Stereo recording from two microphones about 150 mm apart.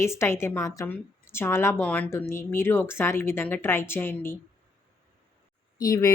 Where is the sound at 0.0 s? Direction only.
15° left (ahead or behind).